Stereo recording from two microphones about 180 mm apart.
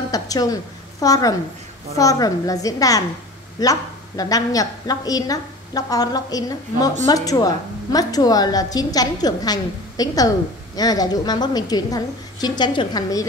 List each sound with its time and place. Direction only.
0.1 s a woman's voice: 20° left (ahead or behind)